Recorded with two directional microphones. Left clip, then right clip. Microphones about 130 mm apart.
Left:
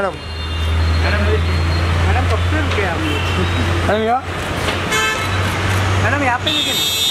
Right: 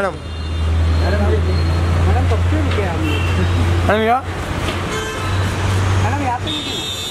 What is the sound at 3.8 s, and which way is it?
Speech, 30° right (ahead or behind).